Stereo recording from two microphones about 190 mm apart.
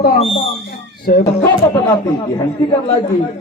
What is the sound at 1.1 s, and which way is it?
Speech, 55° left (ahead or behind).